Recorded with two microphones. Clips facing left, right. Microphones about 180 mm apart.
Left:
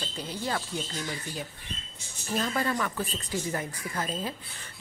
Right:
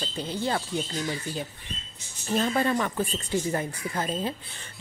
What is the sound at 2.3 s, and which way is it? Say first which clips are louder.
Speech: right 4 dB; 25° right (ahead or behind).